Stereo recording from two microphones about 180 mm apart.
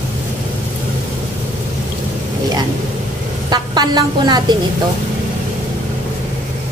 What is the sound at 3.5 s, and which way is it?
A woman's voice, 25° right (ahead or behind).